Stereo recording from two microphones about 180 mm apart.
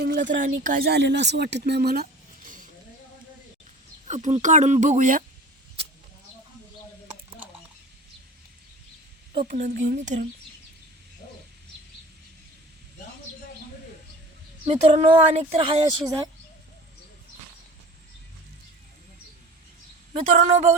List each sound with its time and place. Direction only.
0.0 s speech: 65° right (ahead or behind); by 0.9 s 45° right (ahead or behind)
0.9 s speech: 75° right (ahead or behind); by 2.6 s 45° right (ahead or behind)
4.0 s speech: 40° right (ahead or behind)
9.5 s speech: 45° right (ahead or behind)
9.7 s speech: 60° right (ahead or behind)
14.7 s speech: 30° right (ahead or behind)
15.8 s speech: 20° right (ahead or behind)
20.1 s speech: 40° right (ahead or behind)